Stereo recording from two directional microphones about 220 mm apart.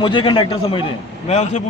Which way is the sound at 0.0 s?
20° left (ahead or behind).